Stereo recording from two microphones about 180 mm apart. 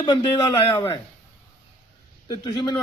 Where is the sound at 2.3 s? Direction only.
20° left (ahead or behind).